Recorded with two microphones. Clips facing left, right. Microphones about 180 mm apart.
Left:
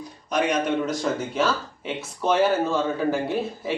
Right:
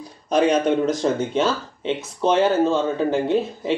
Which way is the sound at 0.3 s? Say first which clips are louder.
Right 5 dB; 30° right (ahead or behind).